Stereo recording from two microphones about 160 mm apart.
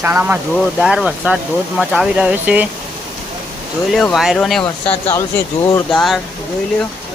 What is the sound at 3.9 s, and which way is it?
Speech, centre (ahead or behind).